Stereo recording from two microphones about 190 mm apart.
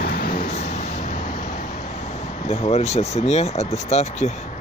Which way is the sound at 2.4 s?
35° left (ahead or behind).